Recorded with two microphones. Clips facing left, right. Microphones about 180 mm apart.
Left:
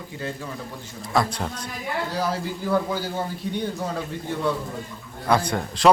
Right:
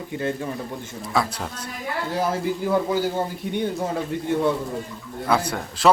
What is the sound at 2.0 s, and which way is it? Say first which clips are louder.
A man's voice: right 6 dB; 25° right (ahead or behind).